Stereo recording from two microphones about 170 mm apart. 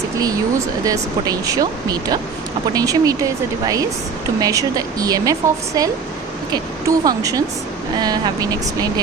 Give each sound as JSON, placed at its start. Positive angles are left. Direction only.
{"t": 0.9, "sound": "a woman's voice", "side_deg": -20}